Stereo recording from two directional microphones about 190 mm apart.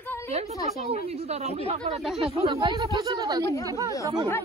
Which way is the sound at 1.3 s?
35° right (ahead or behind).